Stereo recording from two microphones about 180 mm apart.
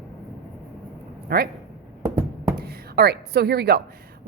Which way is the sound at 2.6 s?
60° right (ahead or behind).